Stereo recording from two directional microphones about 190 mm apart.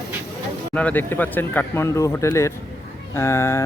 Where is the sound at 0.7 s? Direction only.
10° left (ahead or behind).